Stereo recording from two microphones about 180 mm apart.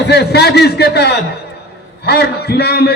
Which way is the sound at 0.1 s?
65° left (ahead or behind).